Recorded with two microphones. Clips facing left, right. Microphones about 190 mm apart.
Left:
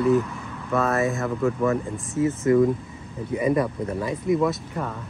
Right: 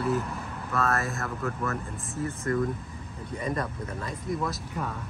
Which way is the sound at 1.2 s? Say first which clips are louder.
Left 9 dB; 15° left (ahead or behind).